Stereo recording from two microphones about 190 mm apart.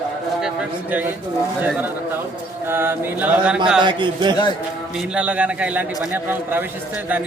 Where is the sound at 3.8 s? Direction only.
25° right (ahead or behind).